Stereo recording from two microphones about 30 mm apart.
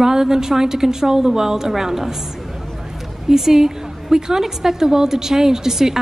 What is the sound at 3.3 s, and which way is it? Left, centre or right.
A woman's voice, centre.